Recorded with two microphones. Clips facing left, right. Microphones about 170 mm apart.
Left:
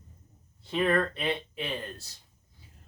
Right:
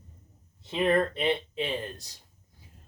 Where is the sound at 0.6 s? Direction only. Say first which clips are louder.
Right 2 dB; 20° right (ahead or behind).